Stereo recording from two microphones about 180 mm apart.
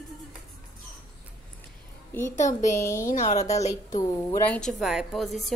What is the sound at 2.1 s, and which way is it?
Speech, 10° left (ahead or behind).